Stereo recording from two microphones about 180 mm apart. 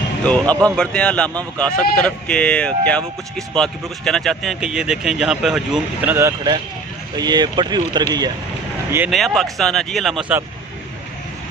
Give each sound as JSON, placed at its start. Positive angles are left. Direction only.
{"t": 0.2, "sound": "speech", "side_deg": 5}
{"t": 6.1, "sound": "speech", "side_deg": -20}
{"t": 9.1, "sound": "speech", "side_deg": 0}